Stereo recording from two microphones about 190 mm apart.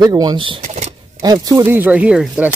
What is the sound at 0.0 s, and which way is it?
Speech, 20° right (ahead or behind).